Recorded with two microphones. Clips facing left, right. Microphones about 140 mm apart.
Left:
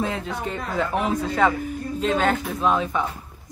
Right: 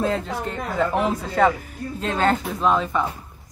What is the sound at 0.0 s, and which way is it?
A woman's voice, centre (ahead or behind).